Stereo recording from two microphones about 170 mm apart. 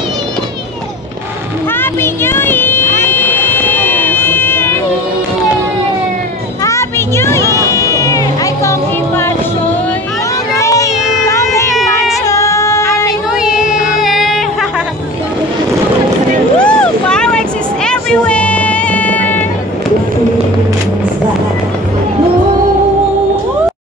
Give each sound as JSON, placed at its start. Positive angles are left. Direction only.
{"t": 1.8, "sound": "vehicle", "side_deg": 15}
{"t": 6.6, "sound": "music", "side_deg": 15}
{"t": 10.5, "sound": "a sound", "side_deg": 20}
{"t": 12.3, "sound": "music", "side_deg": 20}
{"t": 13.3, "sound": "a sound", "side_deg": -5}
{"t": 16.5, "sound": "vehicle", "side_deg": 5}